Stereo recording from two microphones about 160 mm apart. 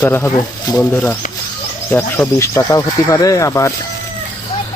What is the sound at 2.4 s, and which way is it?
Speech, 20° left (ahead or behind).